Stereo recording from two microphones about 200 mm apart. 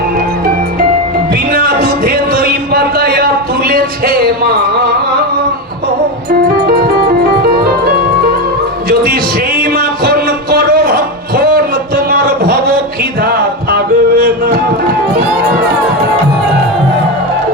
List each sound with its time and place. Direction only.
1.3 s music: 45° right (ahead or behind)
6.7 s music: 50° right (ahead or behind)
9.6 s music: 45° right (ahead or behind)